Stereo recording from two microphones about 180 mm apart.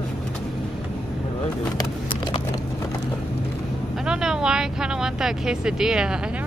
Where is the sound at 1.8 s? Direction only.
25° left (ahead or behind).